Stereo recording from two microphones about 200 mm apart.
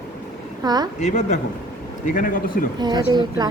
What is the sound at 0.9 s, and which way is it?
A man's voice, 35° left (ahead or behind).